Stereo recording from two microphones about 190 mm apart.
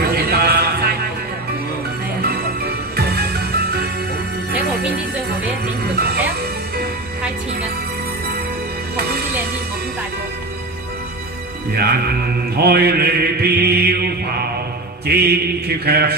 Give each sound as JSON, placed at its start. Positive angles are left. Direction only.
{"t": 0.0, "sound": "music", "side_deg": -55}
{"t": 2.2, "sound": "music", "side_deg": -55}
{"t": 11.7, "sound": "speech", "side_deg": -55}
{"t": 12.5, "sound": "mantra", "side_deg": -55}